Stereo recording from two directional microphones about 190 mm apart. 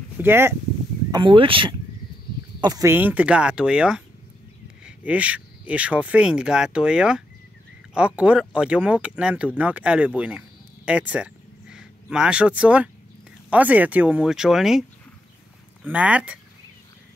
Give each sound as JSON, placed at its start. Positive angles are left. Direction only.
{"t": 0.2, "sound": "speech", "side_deg": -10}
{"t": 1.1, "sound": "speech", "side_deg": -25}
{"t": 15.9, "sound": "speech", "side_deg": -5}